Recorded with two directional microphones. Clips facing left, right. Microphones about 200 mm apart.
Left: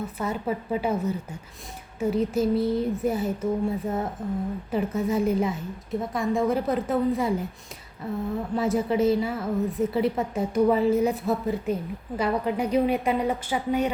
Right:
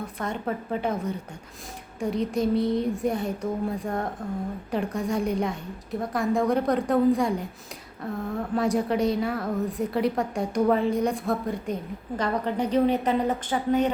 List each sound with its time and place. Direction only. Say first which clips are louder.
0.0 s a woman's voice: left 2 dB; 5° left (ahead or behind)